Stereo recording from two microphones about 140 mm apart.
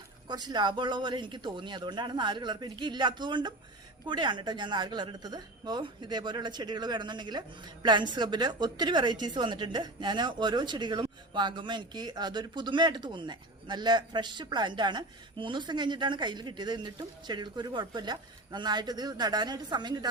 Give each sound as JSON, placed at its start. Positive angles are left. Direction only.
{"t": 0.3, "sound": "a woman's voice", "side_deg": -30}